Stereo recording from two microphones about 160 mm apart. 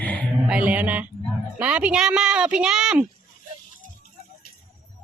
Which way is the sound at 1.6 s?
10° right (ahead or behind).